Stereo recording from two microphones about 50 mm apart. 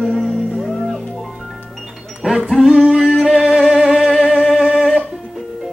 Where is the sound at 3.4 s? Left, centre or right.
Centre.